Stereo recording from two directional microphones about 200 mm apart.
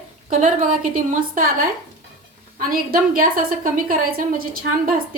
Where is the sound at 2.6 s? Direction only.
45° right (ahead or behind).